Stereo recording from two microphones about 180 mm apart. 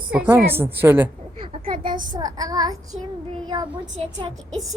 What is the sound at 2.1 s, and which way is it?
Child singing, 20° right (ahead or behind).